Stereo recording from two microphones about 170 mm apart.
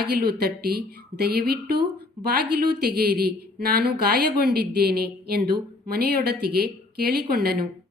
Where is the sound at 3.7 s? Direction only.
65° right (ahead or behind).